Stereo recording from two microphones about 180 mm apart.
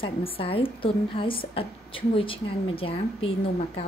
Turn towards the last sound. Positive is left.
turn(degrees=30)  # may be behind; listen again after turning